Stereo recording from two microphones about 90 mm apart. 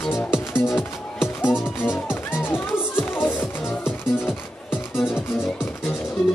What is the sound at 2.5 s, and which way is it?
Music, 25° left (ahead or behind).